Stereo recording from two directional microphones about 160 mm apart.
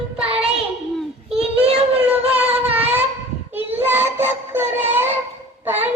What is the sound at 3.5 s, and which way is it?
Child singing, 10° right (ahead or behind).